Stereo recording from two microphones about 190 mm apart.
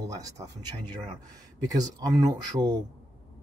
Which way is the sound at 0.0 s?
20° right (ahead or behind).